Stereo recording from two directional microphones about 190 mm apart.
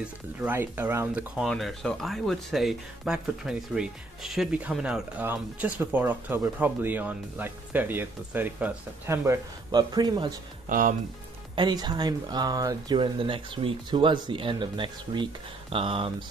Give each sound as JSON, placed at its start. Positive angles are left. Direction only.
{"t": 0.4, "sound": "speech", "side_deg": -10}
{"t": 10.7, "sound": "speech", "side_deg": -45}
{"t": 11.5, "sound": "speech", "side_deg": -20}